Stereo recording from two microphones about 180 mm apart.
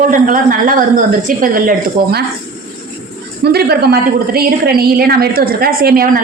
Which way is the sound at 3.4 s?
60° right (ahead or behind).